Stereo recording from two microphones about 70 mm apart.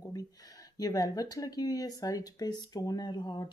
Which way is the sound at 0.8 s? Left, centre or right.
Left.